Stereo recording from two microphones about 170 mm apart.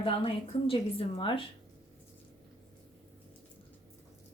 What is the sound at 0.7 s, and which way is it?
Speech, 30° left (ahead or behind).